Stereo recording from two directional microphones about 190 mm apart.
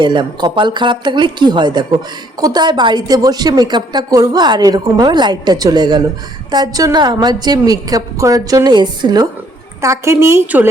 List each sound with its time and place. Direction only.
0.0 s a woman's voice: 25° right (ahead or behind)